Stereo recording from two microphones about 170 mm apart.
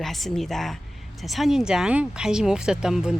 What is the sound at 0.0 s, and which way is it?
Speech, centre (ahead or behind).